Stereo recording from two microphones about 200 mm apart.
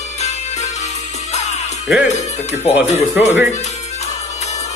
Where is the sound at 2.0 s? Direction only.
35° left (ahead or behind).